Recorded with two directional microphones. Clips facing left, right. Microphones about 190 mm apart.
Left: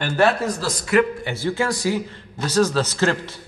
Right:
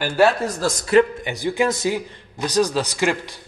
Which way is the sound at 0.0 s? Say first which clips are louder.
Right 1 dB; 10° right (ahead or behind).